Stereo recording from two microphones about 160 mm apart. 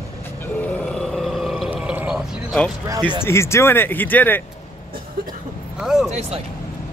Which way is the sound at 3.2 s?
15° left (ahead or behind).